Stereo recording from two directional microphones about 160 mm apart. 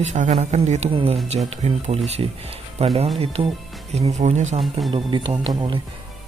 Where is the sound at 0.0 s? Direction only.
45° right (ahead or behind).